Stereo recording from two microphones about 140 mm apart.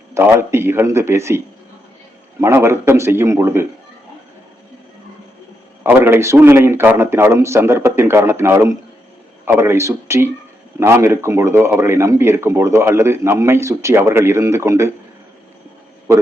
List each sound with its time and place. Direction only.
0.1 s a man's voice: 15° right (ahead or behind)
2.6 s a man's voice: 20° right (ahead or behind)
5.8 s a man's voice: 15° right (ahead or behind)